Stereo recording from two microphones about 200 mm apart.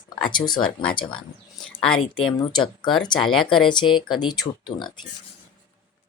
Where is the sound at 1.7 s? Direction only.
5° left (ahead or behind).